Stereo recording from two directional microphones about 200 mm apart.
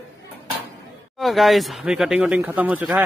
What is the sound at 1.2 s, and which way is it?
Speech, centre (ahead or behind).